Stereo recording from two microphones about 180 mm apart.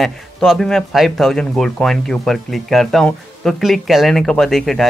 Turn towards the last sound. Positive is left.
turn(degrees=0)  # may be behind; listen again after turning